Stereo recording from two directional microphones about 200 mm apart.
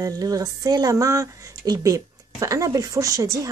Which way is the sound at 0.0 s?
20° right (ahead or behind).